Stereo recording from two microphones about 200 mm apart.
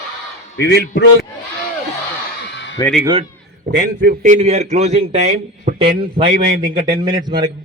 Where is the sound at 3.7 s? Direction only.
50° right (ahead or behind).